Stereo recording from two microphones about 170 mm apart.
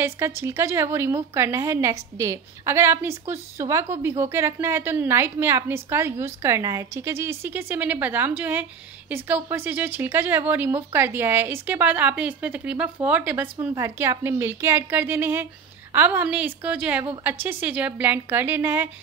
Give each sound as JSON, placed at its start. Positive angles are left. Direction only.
{"t": 0.0, "sound": "speech", "side_deg": -15}